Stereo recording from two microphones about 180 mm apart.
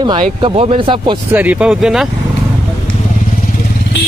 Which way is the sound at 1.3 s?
10° right (ahead or behind).